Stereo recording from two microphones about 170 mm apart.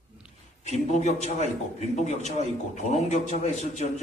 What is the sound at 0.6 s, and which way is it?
A man's voice, 40° left (ahead or behind).